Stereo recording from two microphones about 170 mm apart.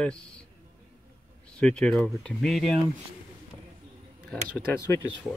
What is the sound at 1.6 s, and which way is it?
Speech, 5° left (ahead or behind).